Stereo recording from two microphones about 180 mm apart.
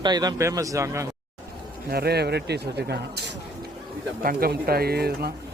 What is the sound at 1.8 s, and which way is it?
A man's voice, 60° right (ahead or behind).